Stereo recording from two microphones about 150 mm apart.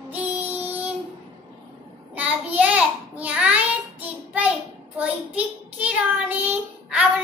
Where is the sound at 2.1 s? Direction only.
10° right (ahead or behind).